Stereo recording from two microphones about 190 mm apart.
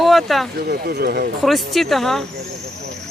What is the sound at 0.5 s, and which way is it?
Speech, 60° right (ahead or behind).